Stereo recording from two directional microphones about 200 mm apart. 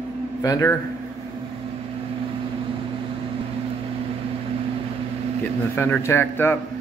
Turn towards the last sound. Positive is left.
turn(degrees=10)  # may be behind; listen again after turning